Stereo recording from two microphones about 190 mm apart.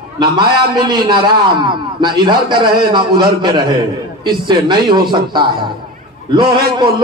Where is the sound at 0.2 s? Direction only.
55° right (ahead or behind).